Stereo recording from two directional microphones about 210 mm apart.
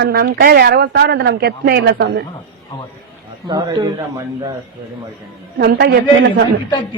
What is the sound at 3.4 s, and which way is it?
A man's voice, 20° right (ahead or behind).